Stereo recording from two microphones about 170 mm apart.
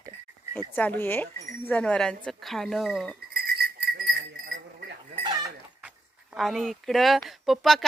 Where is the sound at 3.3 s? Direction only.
65° right (ahead or behind).